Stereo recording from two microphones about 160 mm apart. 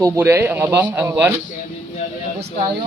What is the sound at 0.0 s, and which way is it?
Speech, 15° right (ahead or behind).